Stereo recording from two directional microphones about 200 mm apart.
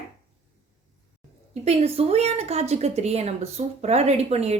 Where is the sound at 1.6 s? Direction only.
30° right (ahead or behind).